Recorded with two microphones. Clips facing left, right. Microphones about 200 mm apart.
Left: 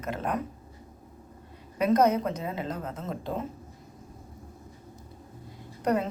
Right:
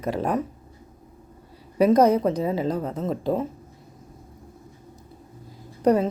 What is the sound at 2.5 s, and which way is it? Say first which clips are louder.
Speech: right 8 dB; 35° right (ahead or behind).